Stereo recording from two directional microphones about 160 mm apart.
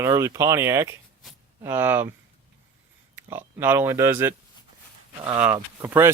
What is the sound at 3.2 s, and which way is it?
Speech, 15° right (ahead or behind).